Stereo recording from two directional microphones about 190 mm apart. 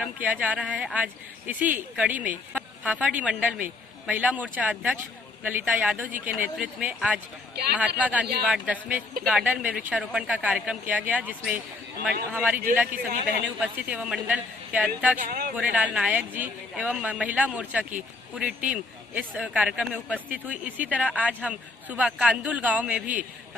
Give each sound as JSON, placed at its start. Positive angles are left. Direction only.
{"t": 0.0, "sound": "a man's voice", "side_deg": -5}
{"t": 15.1, "sound": "speech", "side_deg": -50}
{"t": 15.5, "sound": "speech", "side_deg": -5}